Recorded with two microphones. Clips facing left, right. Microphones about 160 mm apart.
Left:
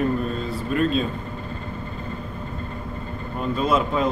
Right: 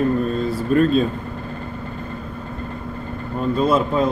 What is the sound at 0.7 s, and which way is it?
Speech, 40° right (ahead or behind).